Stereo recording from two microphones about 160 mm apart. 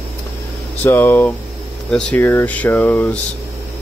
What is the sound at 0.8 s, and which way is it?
Speech, 15° left (ahead or behind).